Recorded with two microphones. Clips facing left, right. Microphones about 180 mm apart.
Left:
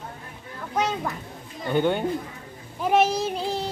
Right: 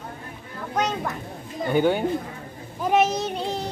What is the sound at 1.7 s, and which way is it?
Speech, 5° right (ahead or behind).